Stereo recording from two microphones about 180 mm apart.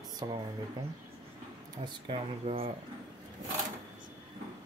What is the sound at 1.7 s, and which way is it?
Speech, 25° right (ahead or behind).